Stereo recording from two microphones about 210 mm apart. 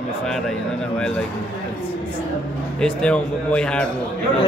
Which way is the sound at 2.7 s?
5° left (ahead or behind).